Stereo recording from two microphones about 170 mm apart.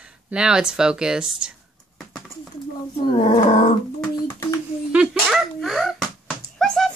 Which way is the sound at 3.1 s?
45° left (ahead or behind).